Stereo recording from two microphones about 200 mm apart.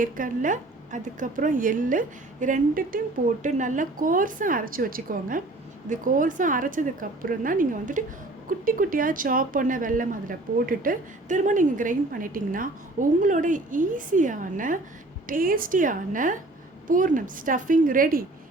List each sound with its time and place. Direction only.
0.0 s a woman's voice: 40° right (ahead or behind)